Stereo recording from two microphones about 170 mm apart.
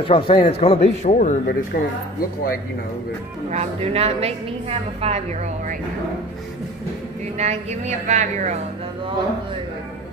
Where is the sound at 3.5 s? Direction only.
40° right (ahead or behind).